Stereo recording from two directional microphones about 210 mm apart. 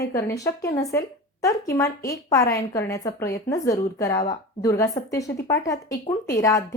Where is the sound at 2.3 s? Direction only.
15° left (ahead or behind).